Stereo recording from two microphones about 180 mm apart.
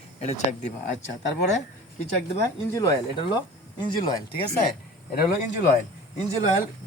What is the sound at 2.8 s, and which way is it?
Speech, 20° left (ahead or behind).